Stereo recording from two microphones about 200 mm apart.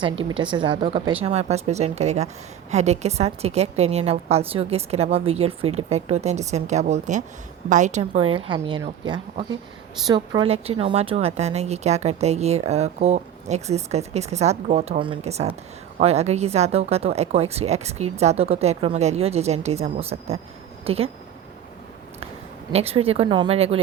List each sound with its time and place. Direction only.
0.0 s a woman's voice: 25° right (ahead or behind)
22.7 s a woman's voice: 30° right (ahead or behind)